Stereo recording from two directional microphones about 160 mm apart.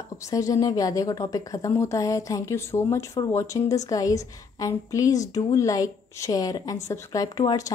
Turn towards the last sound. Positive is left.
turn(degrees=25)  # may be behind; listen again after turning